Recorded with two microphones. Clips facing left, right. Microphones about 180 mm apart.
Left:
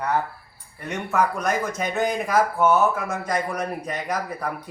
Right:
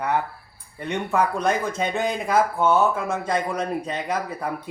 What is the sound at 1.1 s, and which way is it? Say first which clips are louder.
Speech: even; 30° right (ahead or behind).